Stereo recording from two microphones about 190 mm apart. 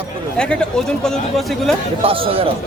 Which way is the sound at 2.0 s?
30° right (ahead or behind).